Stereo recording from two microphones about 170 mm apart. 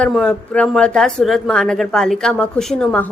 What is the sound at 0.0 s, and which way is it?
A woman's voice, 5° left (ahead or behind).